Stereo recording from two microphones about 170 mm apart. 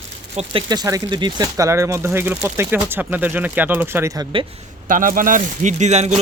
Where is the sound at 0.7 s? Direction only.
20° right (ahead or behind).